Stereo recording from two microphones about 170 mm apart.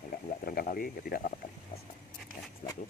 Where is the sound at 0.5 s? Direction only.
60° left (ahead or behind).